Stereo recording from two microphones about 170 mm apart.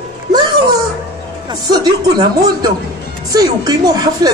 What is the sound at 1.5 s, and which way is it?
Speech, 25° right (ahead or behind).